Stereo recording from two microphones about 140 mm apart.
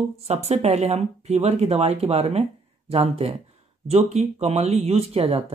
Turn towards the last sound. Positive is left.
turn(degrees=-45)  # may be behind; listen again after turning